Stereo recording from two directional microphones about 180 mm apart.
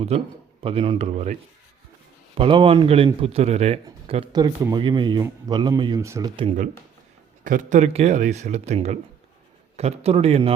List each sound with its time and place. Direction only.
0.1 s speech: 35° right (ahead or behind)
2.4 s speech: 30° right (ahead or behind)
4.1 s a man's voice: 25° right (ahead or behind)
6.3 s speech: 30° right (ahead or behind)
7.4 s speech: 45° right (ahead or behind)